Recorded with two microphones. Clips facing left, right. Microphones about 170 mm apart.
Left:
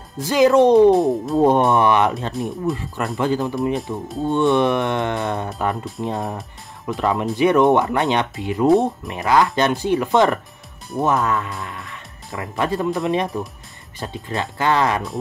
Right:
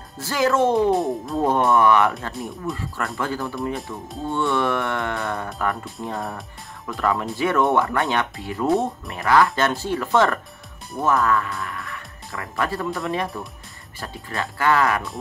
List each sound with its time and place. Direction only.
0.2 s speech: 15° left (ahead or behind)
0.9 s speech: centre (ahead or behind)
1.4 s speech: 20° left (ahead or behind)